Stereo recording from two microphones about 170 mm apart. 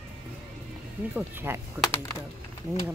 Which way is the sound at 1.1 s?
10° right (ahead or behind).